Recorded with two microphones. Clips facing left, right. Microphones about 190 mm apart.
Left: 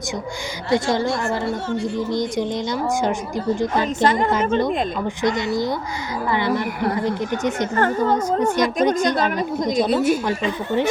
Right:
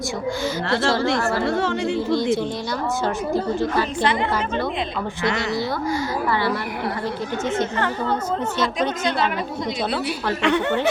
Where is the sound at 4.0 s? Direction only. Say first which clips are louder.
Left 6 dB; 45° left (ahead or behind).